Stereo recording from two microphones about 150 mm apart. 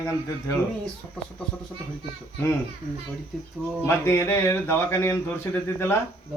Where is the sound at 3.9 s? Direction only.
15° left (ahead or behind).